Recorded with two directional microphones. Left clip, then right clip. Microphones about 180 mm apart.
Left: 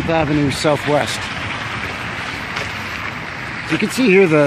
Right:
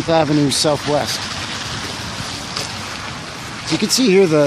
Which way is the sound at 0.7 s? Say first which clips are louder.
Left 1 dB; centre (ahead or behind).